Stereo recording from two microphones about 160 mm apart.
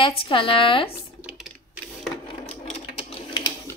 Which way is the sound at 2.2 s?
40° left (ahead or behind).